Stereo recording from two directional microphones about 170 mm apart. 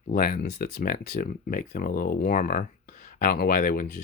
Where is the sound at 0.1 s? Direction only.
60° left (ahead or behind).